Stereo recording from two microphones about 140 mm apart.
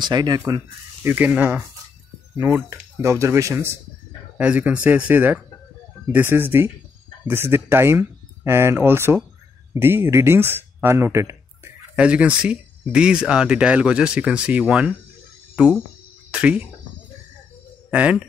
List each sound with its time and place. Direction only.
0.0 s speech: 30° right (ahead or behind)
1.0 s speech: 10° right (ahead or behind)
11.9 s speech: 10° right (ahead or behind)
17.9 s speech: 10° right (ahead or behind)